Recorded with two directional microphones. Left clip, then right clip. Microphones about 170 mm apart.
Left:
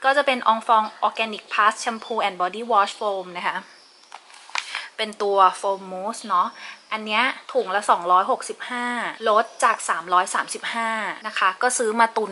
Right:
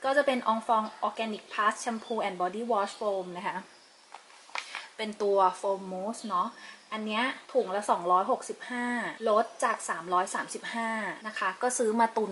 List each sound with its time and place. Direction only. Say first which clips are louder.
0.0 s speech: left 7 dB; 15° right (ahead or behind)
4.5 s a sound: left 9 dB; 5° right (ahead or behind)
5.5 s speech: left 6 dB; 25° right (ahead or behind)